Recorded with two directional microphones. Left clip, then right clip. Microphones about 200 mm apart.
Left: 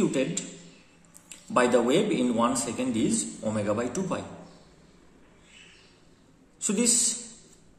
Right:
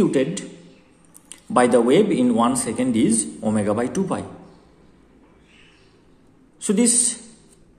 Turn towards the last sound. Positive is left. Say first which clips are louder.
# right 6 dB
turn(degrees=-30)  # may be behind; listen again after turning